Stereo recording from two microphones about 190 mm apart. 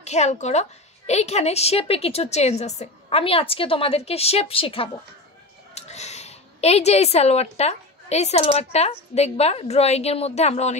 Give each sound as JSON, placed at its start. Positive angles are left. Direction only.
{"t": 0.0, "sound": "a woman's voice", "side_deg": 35}